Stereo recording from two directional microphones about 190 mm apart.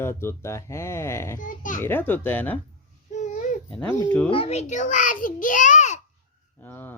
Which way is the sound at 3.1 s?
40° left (ahead or behind).